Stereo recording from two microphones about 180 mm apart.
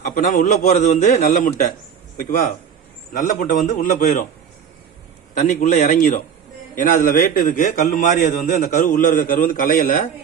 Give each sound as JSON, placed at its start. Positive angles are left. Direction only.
{"t": 0.0, "sound": "a man's voice", "side_deg": 45}
{"t": 3.1, "sound": "a man's voice", "side_deg": 50}
{"t": 5.3, "sound": "a man's voice", "side_deg": 45}